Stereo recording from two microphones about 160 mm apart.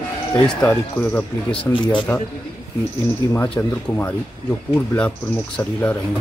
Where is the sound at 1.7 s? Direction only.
30° left (ahead or behind).